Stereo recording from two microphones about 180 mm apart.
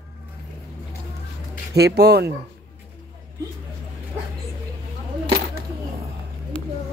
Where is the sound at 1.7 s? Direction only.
65° right (ahead or behind).